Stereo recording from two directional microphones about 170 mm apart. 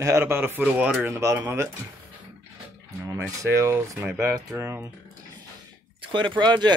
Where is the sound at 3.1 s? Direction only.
15° right (ahead or behind).